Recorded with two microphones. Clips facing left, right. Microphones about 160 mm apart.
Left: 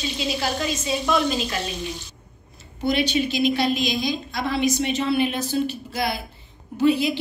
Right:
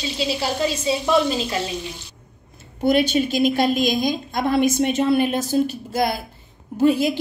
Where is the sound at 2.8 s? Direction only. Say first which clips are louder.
Right 4 dB; 50° right (ahead or behind).